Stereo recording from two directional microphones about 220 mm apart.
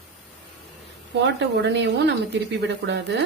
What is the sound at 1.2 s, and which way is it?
Speech, 55° right (ahead or behind).